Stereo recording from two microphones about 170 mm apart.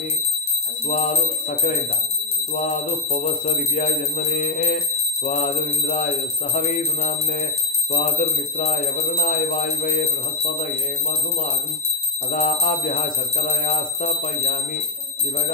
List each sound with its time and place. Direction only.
0.8 s speech: 50° left (ahead or behind)
12.3 s speech: 50° left (ahead or behind)